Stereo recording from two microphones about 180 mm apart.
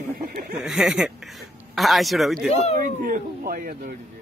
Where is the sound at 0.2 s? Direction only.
55° right (ahead or behind).